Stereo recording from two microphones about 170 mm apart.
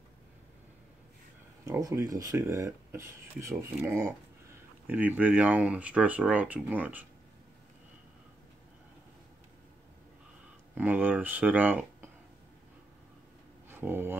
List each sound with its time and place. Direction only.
1.7 s speech: 20° right (ahead or behind)
10.7 s speech: 10° right (ahead or behind)
13.7 s speech: 15° right (ahead or behind)